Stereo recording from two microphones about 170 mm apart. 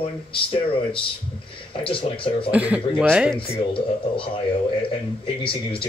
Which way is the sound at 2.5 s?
10° right (ahead or behind).